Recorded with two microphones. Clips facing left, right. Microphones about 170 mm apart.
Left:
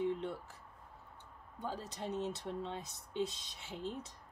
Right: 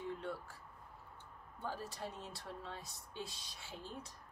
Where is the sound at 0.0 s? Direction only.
20° left (ahead or behind).